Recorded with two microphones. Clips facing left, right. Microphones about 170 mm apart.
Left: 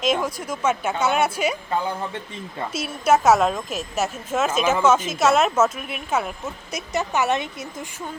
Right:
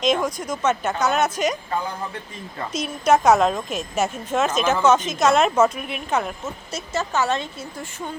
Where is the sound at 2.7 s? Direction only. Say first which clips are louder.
Right 1 dB; 5° left (ahead or behind).